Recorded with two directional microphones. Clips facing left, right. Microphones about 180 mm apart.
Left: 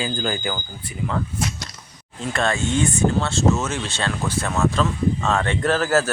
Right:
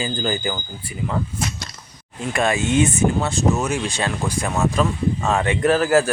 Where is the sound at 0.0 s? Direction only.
5° right (ahead or behind).